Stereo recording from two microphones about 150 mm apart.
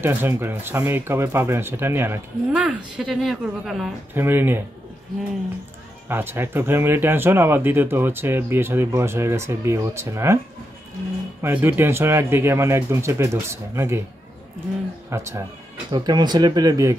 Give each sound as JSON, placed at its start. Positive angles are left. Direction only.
{"t": 0.0, "sound": "speech", "side_deg": -15}
{"t": 4.1, "sound": "speech", "side_deg": -15}
{"t": 6.0, "sound": "speech", "side_deg": -15}
{"t": 11.4, "sound": "speech", "side_deg": -15}
{"t": 15.0, "sound": "speech", "side_deg": -20}